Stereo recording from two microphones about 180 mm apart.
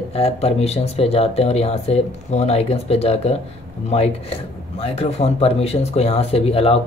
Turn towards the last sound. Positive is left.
turn(degrees=35)  # may be behind; listen again after turning